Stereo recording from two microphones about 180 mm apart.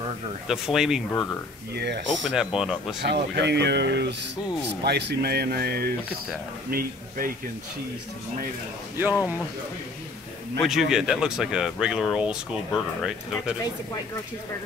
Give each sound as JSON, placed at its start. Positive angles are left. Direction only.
{"t": 0.5, "sound": "speech", "side_deg": 0}
{"t": 1.7, "sound": "speech", "side_deg": -65}
{"t": 2.3, "sound": "speech", "side_deg": -5}
{"t": 3.0, "sound": "speech", "side_deg": -70}
{"t": 10.6, "sound": "speech", "side_deg": 0}